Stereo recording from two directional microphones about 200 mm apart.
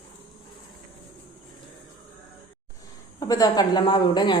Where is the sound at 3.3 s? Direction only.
20° left (ahead or behind).